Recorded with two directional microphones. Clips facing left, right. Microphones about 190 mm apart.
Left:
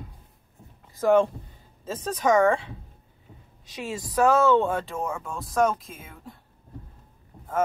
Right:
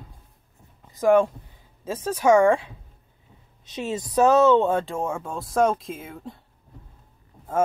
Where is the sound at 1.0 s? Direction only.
10° right (ahead or behind); by 5.8 s 30° right (ahead or behind).